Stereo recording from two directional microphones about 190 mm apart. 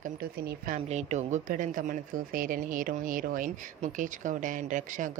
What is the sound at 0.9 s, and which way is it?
Speech, 35° right (ahead or behind).